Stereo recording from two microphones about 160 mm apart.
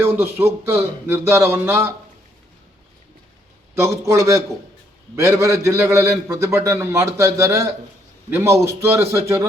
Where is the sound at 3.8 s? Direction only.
20° right (ahead or behind).